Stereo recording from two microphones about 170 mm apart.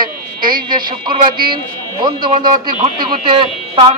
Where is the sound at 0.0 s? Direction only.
55° right (ahead or behind).